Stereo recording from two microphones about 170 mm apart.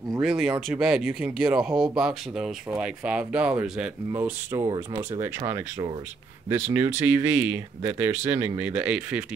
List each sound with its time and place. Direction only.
0.2 s speech: centre (ahead or behind)
4.1 s speech: 15° right (ahead or behind)
6.5 s speech: 15° right (ahead or behind)